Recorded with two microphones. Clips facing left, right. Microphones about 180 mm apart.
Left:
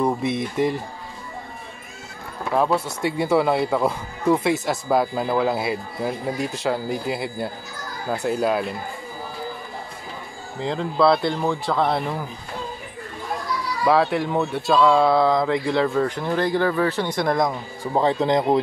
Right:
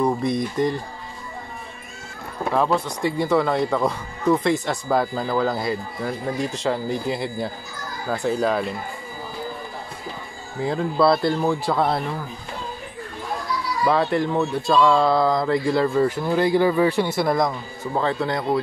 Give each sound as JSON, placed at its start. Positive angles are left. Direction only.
{"t": 0.0, "sound": "speech", "side_deg": 5}
{"t": 2.5, "sound": "speech", "side_deg": 5}
{"t": 10.6, "sound": "speech", "side_deg": -5}
{"t": 13.8, "sound": "speech", "side_deg": 0}
{"t": 17.5, "sound": "speech", "side_deg": 20}